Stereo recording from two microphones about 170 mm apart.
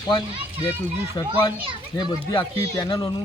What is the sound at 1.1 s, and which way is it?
Speech, 25° left (ahead or behind).